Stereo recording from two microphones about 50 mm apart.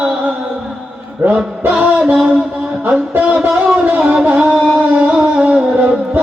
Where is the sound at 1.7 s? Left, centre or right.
Right.